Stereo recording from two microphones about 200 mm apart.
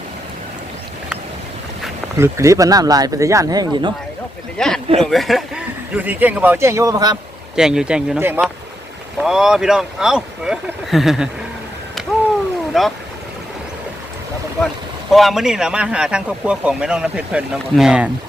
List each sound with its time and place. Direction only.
2.1 s speech: 15° right (ahead or behind)
4.5 s speech: 5° left (ahead or behind); by 7.2 s 20° right (ahead or behind)
7.5 s speech: 5° right (ahead or behind)
12.7 s speech: centre (ahead or behind)
15.1 s speech: centre (ahead or behind)